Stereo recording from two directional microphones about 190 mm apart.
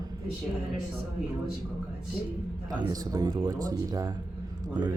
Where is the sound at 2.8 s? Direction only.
20° right (ahead or behind).